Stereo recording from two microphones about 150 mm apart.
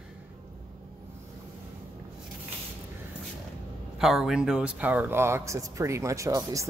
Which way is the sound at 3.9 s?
5° right (ahead or behind).